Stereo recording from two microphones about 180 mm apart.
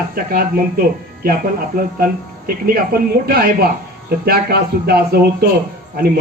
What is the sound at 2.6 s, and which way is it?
A man's voice, 55° right (ahead or behind).